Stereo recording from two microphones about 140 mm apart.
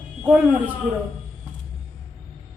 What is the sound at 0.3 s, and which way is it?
Speech, 10° right (ahead or behind).